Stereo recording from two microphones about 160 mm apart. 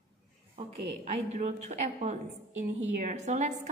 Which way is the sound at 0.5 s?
40° right (ahead or behind).